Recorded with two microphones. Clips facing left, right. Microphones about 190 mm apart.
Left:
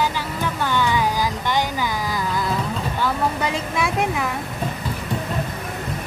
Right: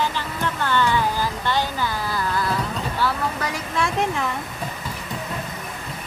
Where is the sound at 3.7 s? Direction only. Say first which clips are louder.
Right 2 dB; 10° left (ahead or behind).